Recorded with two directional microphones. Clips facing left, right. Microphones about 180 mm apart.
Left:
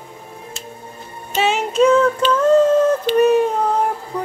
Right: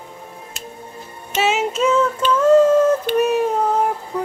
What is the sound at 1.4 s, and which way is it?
Child singing, 5° right (ahead or behind).